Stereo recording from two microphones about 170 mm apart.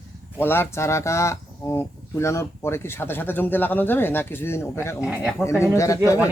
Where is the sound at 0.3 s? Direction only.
10° left (ahead or behind).